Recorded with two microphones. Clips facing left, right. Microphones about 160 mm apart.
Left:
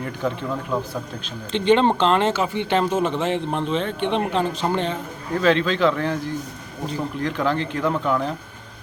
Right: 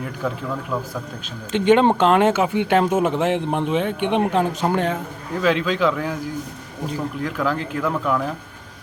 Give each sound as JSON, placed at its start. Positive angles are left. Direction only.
{"t": 0.7, "sound": "speech", "side_deg": 20}
{"t": 1.5, "sound": "speech", "side_deg": -10}